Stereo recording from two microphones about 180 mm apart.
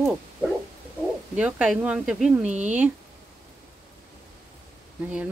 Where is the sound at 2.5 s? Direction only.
40° right (ahead or behind).